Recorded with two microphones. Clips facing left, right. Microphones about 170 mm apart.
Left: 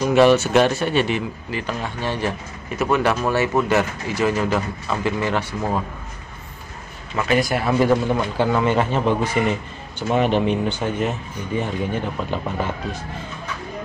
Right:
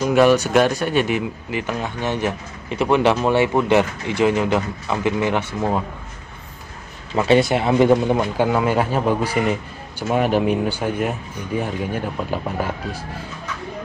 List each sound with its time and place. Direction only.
0.1 s speech: 10° right (ahead or behind)
7.2 s speech: 25° right (ahead or behind); by 12.7 s 5° right (ahead or behind)